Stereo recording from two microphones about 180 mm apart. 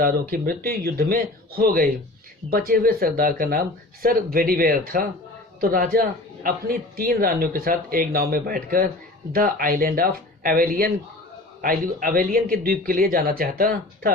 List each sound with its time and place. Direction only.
0.0 s speech: 55° right (ahead or behind)